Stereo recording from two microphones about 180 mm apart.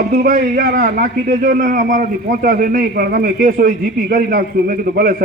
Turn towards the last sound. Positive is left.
turn(degrees=-55)  # may be behind; listen again after turning